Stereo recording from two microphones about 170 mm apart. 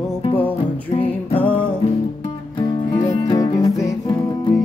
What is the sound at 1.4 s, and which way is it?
Music, 10° left (ahead or behind).